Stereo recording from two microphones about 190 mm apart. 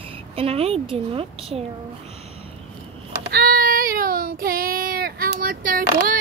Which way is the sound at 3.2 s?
55° right (ahead or behind).